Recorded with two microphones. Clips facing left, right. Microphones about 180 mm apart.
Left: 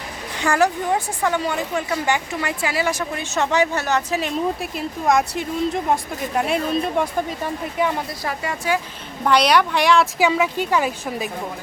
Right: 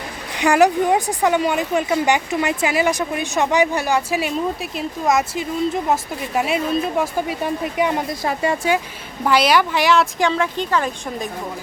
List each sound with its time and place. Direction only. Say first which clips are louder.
0.3 s speech: right 5 dB; 15° right (ahead or behind)
9.2 s speech: even; 5° right (ahead or behind)